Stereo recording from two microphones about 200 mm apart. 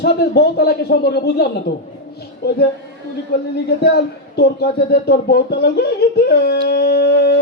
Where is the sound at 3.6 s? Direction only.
55° left (ahead or behind).